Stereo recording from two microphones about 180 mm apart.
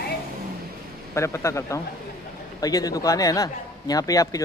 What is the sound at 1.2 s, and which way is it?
A man's voice, 15° left (ahead or behind).